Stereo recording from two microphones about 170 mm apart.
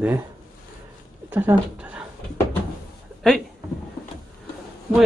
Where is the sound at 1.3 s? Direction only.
10° right (ahead or behind).